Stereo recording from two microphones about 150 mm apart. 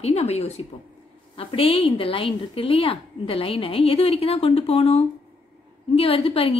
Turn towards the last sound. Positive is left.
turn(degrees=40)  # may be behind; listen again after turning